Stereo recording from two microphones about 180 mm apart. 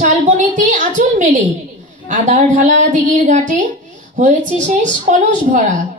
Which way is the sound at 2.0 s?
45° right (ahead or behind).